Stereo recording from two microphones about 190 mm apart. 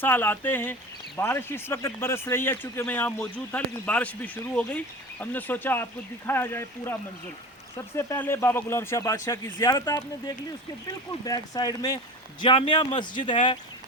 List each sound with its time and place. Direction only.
0.0 s a man's voice: 10° left (ahead or behind); by 13.6 s 25° left (ahead or behind)